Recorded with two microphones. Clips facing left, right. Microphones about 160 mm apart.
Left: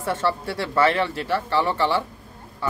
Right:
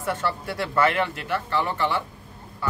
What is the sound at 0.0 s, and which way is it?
A man's voice, 30° left (ahead or behind).